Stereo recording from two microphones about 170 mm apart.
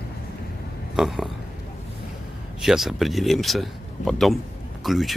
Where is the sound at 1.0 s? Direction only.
Centre (ahead or behind).